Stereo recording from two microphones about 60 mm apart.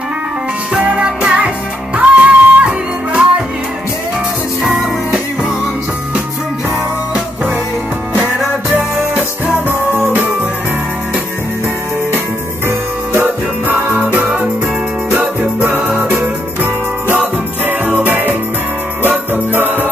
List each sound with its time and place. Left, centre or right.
0.7 s music: centre
2.0 s music: right
4.6 s music: centre
8.6 s music: right
12.6 s music: right
16.0 s music: right
17.1 s jingle bell: right